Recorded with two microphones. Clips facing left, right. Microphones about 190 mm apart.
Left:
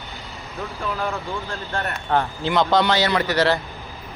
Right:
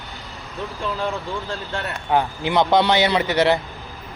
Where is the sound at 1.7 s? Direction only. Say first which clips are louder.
Right 1 dB; 15° right (ahead or behind).